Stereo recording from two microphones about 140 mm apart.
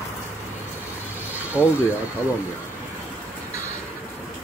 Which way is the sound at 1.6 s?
10° right (ahead or behind).